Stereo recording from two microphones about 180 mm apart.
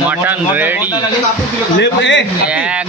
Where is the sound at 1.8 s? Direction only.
80° left.